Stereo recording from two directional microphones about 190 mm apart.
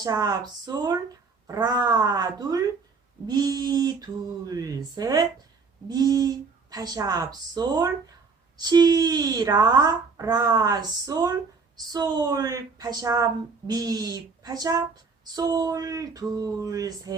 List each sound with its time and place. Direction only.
0.0 s a woman's voice: 20° right (ahead or behind)